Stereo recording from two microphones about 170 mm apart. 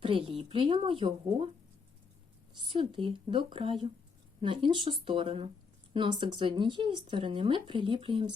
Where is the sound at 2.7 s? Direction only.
30° right (ahead or behind).